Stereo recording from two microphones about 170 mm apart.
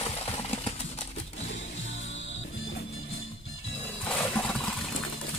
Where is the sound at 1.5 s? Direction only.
90° left.